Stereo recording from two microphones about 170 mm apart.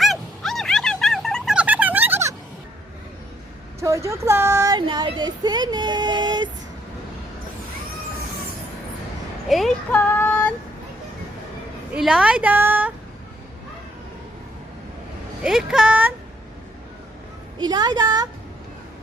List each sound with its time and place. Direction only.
0.0 s a sound: centre (ahead or behind)
3.8 s speech: 20° right (ahead or behind)
9.5 s child singing: centre (ahead or behind)
11.9 s a woman's voice: 5° right (ahead or behind)
15.4 s speech: 5° right (ahead or behind)
17.6 s speech: 25° right (ahead or behind)